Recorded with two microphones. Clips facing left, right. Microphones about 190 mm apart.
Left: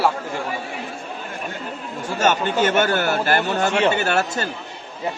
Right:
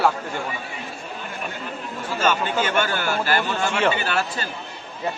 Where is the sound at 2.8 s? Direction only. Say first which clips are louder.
Left 4 dB; 50° left (ahead or behind).